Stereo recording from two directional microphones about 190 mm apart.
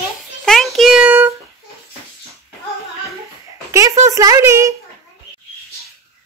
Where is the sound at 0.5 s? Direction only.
Centre (ahead or behind).